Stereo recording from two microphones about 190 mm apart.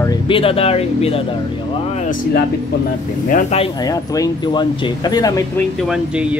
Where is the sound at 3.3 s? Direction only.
45° left (ahead or behind).